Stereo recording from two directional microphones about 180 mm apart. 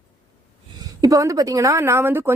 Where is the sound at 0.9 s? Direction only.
20° right (ahead or behind).